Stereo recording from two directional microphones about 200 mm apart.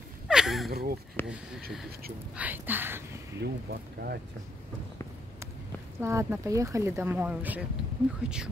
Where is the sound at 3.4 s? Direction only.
50° right (ahead or behind).